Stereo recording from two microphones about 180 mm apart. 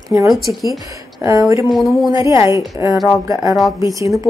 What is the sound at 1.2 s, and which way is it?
Speech, 15° right (ahead or behind).